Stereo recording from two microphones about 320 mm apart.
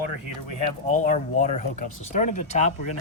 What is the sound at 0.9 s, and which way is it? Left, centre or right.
Speech, left.